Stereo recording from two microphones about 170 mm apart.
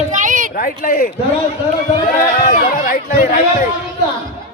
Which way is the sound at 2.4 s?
55° left (ahead or behind).